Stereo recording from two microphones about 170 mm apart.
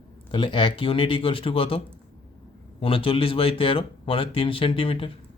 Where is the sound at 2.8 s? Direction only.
35° left (ahead or behind).